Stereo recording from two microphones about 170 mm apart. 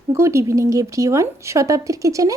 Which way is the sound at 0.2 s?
15° right (ahead or behind).